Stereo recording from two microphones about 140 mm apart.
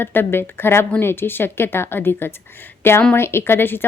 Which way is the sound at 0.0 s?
15° left (ahead or behind).